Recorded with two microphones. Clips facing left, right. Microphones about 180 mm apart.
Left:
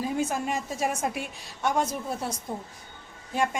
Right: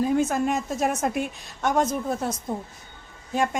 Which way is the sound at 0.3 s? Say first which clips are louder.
Right 5 dB; 50° right (ahead or behind).